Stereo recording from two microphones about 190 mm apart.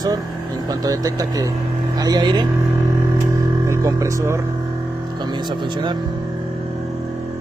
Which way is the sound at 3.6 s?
15° right (ahead or behind).